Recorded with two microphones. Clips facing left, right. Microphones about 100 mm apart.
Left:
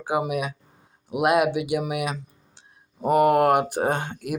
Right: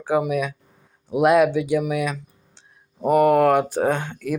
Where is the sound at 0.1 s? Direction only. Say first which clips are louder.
Right 4 dB; 15° left (ahead or behind).